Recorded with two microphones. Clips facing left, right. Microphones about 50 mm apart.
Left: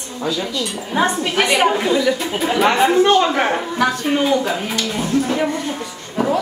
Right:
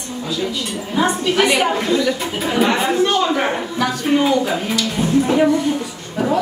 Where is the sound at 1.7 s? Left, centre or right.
Centre.